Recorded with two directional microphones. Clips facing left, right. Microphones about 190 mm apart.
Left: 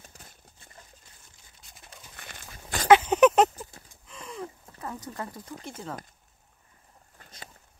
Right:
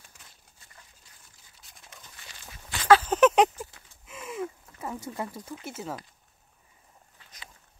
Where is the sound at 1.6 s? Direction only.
Centre (ahead or behind).